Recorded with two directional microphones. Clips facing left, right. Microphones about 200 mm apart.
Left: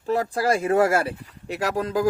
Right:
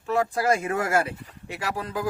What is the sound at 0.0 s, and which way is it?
Speech, 35° left (ahead or behind).